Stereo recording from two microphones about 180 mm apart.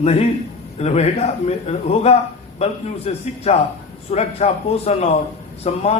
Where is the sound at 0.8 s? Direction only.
35° left (ahead or behind).